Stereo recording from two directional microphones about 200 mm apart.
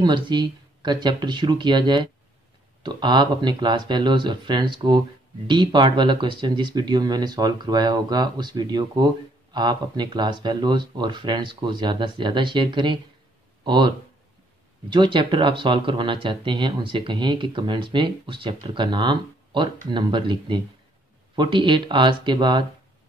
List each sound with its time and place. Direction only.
0.0 s speech: 25° right (ahead or behind)